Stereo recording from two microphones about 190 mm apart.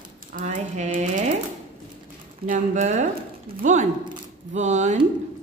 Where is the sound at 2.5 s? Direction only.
40° right (ahead or behind).